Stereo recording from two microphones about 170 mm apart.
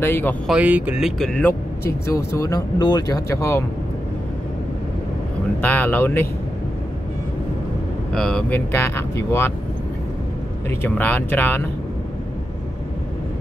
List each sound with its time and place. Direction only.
0.0 s speech: 10° left (ahead or behind)
0.5 s speech: 10° right (ahead or behind)
1.9 s speech: 20° left (ahead or behind)
5.6 s speech: 10° left (ahead or behind)
8.1 s speech: 5° left (ahead or behind)
10.8 s speech: 10° left (ahead or behind)